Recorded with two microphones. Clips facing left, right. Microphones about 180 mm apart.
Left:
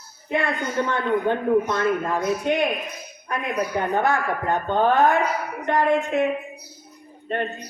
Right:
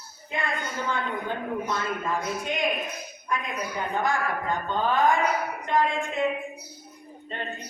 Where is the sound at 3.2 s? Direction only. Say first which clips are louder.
Left 5 dB; 65° left (ahead or behind).